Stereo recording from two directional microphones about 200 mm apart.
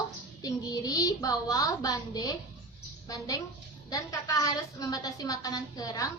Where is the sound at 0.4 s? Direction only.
20° left (ahead or behind).